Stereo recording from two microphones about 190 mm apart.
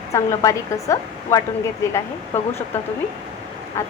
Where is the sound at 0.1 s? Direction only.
15° left (ahead or behind).